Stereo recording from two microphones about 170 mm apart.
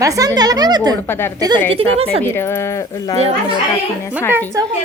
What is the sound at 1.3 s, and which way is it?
Speech, 20° right (ahead or behind).